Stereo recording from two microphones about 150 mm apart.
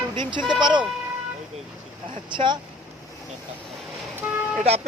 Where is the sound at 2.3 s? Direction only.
30° right (ahead or behind).